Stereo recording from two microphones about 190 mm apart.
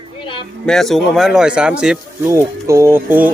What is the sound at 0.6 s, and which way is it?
Speech, centre (ahead or behind).